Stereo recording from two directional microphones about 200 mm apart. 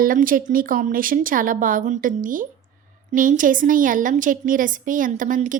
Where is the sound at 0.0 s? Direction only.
45° right (ahead or behind).